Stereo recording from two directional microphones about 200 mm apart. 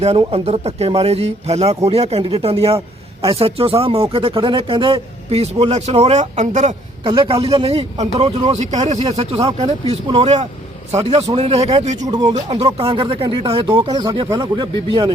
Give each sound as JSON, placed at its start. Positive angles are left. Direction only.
{"t": 0.0, "sound": "speech", "side_deg": -30}
{"t": 11.9, "sound": "speech", "side_deg": -20}
{"t": 12.3, "sound": "speech", "side_deg": -30}